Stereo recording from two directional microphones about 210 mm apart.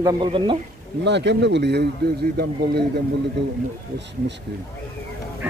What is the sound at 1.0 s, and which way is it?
Speech, 55° right (ahead or behind).